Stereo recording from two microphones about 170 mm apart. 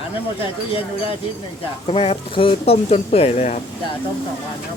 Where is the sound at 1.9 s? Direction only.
35° left (ahead or behind).